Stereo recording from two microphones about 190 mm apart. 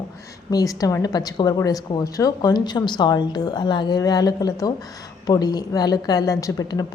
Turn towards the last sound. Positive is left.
turn(degrees=20)  # may be behind; listen again after turning